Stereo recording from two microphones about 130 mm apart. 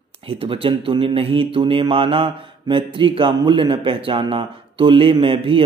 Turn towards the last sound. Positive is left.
turn(degrees=-40)  # may be behind; listen again after turning